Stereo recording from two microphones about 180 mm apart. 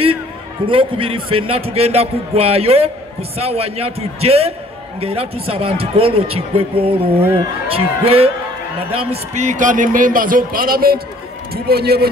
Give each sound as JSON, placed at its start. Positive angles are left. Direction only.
{"t": 0.7, "sound": "a man's voice", "side_deg": -30}